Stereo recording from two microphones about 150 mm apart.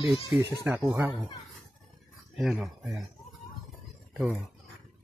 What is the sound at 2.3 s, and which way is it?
Speech, 5° right (ahead or behind).